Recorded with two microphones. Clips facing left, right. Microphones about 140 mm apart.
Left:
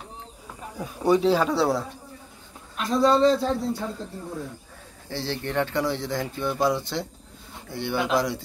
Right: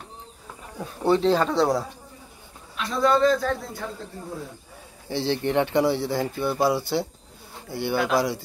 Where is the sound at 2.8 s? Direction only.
40° left (ahead or behind).